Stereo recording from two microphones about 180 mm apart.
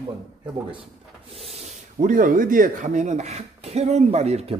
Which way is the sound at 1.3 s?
35° right (ahead or behind).